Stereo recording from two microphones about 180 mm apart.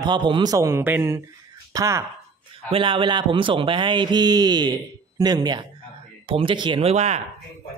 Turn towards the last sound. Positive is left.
turn(degrees=-35)  # may be behind; listen again after turning